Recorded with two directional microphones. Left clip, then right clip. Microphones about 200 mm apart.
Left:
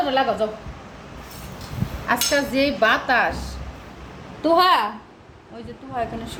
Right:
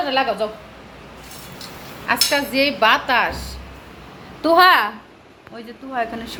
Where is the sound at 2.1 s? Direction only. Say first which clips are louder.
Right 2 dB; 5° left (ahead or behind).